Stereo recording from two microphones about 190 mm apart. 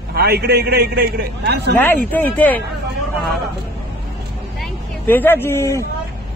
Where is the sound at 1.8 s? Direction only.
10° left (ahead or behind).